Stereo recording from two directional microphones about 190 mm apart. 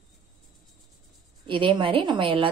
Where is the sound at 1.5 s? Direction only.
25° right (ahead or behind).